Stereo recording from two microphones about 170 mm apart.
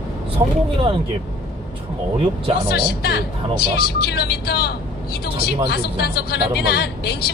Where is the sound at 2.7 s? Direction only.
70° left (ahead or behind).